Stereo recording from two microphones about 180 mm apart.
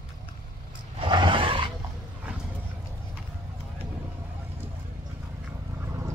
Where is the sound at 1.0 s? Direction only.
25° right (ahead or behind).